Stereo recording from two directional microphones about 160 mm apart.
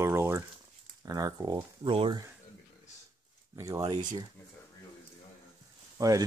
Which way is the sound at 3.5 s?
20° right (ahead or behind).